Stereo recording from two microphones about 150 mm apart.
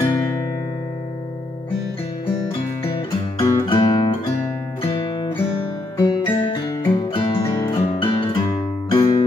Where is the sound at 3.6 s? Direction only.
35° left (ahead or behind).